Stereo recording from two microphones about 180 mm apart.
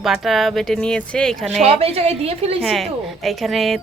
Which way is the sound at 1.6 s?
35° right (ahead or behind).